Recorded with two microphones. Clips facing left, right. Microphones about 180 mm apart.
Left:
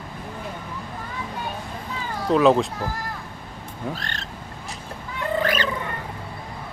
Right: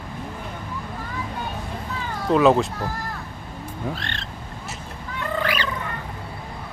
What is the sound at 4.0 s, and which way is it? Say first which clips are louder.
Speech: right 1 dB; 40° left (ahead or behind).